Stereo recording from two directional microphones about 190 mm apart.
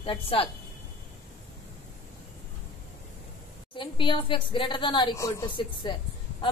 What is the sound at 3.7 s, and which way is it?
A woman's voice, 25° left (ahead or behind).